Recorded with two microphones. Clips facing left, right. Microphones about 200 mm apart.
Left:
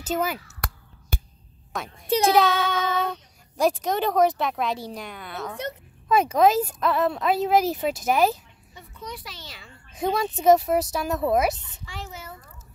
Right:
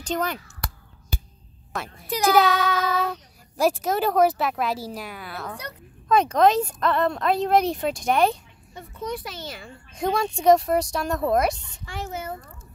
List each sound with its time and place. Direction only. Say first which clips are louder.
0.0 s a child's voice: left 1 dB; 5° left (ahead or behind)
1.7 s a child's voice: right 1 dB; centre (ahead or behind)
2.0 s a child's voice: left 2 dB; 30° left (ahead or behind)
2.3 s a child's voice: right 1 dB; centre (ahead or behind)
8.7 s a child's voice: right 7 dB; 50° right (ahead or behind)
9.9 s a child's voice: right 1 dB; centre (ahead or behind)
11.8 s a child's voice: right 7 dB; 50° right (ahead or behind)